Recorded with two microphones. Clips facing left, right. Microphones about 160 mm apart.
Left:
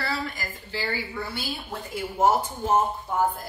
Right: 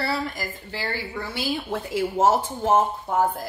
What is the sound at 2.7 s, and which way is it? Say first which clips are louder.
Speech: right 3 dB; 90° right.